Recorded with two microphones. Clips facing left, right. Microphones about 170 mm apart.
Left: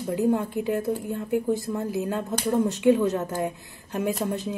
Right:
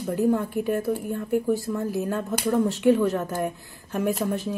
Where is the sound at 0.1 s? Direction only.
15° left (ahead or behind).